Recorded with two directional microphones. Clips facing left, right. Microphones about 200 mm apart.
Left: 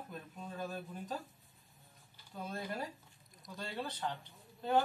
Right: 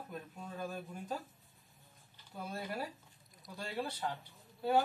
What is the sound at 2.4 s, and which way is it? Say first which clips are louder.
Speech: even; 10° right (ahead or behind).